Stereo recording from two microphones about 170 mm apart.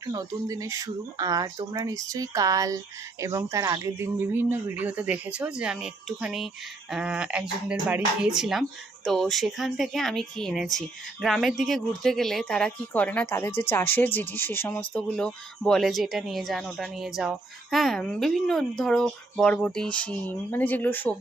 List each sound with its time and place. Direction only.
0.1 s speech: 20° right (ahead or behind); by 21.2 s 10° left (ahead or behind)